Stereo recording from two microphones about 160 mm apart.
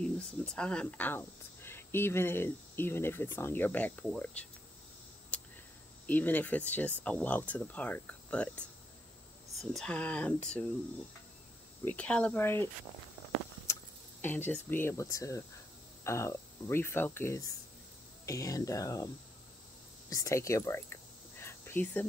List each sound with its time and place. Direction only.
0.0 s speech: 5° left (ahead or behind)
6.0 s speech: 10° left (ahead or behind)
11.8 s speech: 10° left (ahead or behind)
14.2 s speech: 10° left (ahead or behind)
20.1 s a sound: 20° left (ahead or behind)